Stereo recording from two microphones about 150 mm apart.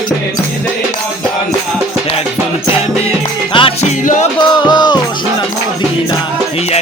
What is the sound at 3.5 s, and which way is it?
Music, 40° left (ahead or behind).